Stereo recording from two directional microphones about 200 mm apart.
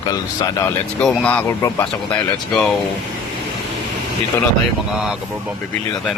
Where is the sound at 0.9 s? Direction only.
5° left (ahead or behind).